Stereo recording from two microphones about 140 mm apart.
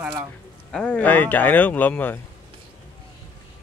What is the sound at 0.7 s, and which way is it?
Speech, 10° left (ahead or behind).